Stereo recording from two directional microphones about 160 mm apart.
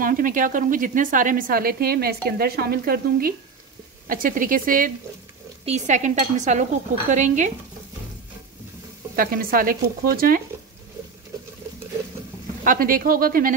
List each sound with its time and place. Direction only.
0.0 s a woman's voice: 60° right (ahead or behind)
5.7 s speech: 50° right (ahead or behind)
9.1 s a woman's voice: 60° right (ahead or behind)
12.6 s a woman's voice: 60° right (ahead or behind)